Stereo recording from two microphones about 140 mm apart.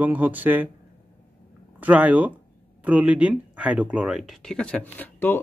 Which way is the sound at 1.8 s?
10° right (ahead or behind).